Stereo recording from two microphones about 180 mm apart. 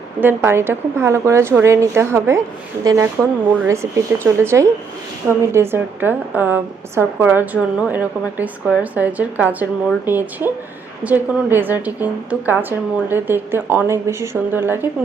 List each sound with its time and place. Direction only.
0.2 s a woman's voice: 10° right (ahead or behind)